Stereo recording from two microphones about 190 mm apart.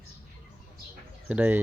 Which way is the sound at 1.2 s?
5° right (ahead or behind).